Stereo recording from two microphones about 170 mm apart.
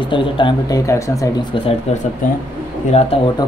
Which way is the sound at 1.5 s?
30° left (ahead or behind).